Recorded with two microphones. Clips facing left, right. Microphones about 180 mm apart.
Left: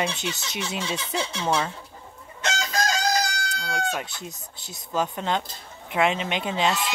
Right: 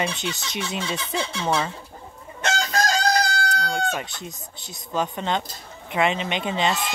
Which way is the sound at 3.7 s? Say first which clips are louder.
Right 2 dB; centre (ahead or behind).